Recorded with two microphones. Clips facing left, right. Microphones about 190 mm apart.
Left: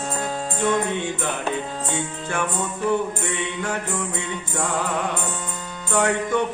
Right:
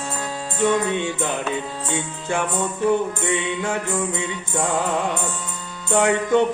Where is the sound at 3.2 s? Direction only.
20° right (ahead or behind).